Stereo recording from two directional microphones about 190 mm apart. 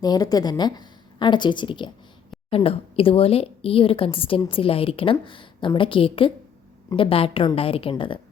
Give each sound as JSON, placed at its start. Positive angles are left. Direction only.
{"t": 0.0, "sound": "a woman's voice", "side_deg": 20}